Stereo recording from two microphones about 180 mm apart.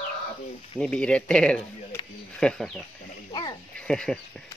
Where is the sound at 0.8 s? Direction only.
5° left (ahead or behind).